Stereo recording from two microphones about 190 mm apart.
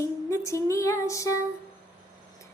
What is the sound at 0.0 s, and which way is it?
Music, 15° left (ahead or behind).